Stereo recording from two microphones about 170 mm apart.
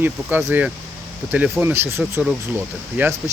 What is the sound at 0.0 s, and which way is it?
Speech, 10° right (ahead or behind).